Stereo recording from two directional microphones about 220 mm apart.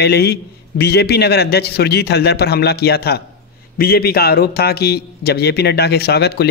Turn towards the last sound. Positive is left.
turn(degrees=45)  # may be behind; listen again after turning